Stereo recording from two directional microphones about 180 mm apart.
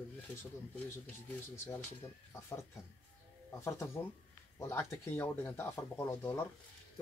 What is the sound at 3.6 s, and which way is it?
Speech, 15° left (ahead or behind).